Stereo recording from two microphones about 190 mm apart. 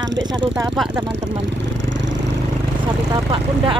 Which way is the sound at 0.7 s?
Centre (ahead or behind).